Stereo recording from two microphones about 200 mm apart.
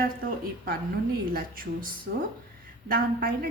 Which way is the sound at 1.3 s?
45° right (ahead or behind).